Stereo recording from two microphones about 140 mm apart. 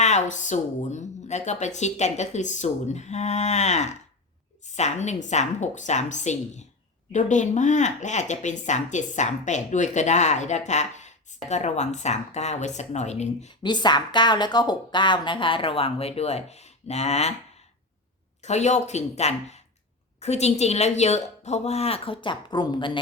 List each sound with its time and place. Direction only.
0.0 s a woman's voice: 60° left (ahead or behind)
13.6 s speech: 30° left (ahead or behind); by 17.3 s 50° left (ahead or behind)
18.4 s a woman's voice: 55° left (ahead or behind); by 22.9 s 30° left (ahead or behind)